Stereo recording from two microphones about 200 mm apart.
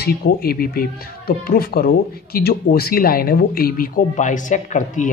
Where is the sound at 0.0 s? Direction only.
50° left (ahead or behind).